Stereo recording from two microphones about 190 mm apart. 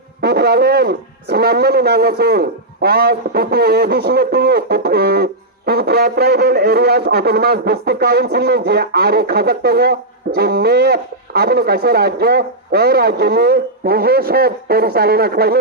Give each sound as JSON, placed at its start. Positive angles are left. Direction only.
{"t": 0.2, "sound": "speech", "side_deg": -55}